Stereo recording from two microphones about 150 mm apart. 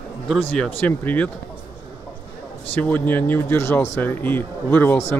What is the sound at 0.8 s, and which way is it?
Speech, 10° left (ahead or behind).